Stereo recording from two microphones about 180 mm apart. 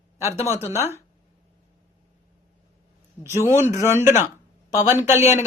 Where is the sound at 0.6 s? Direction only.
15° left (ahead or behind).